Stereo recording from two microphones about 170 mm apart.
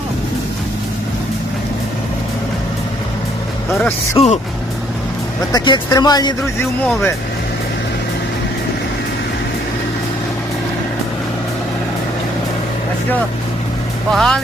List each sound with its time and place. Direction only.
4.2 s speech: 30° left (ahead or behind)
5.5 s speech: 25° left (ahead or behind)
14.1 s speech: centre (ahead or behind)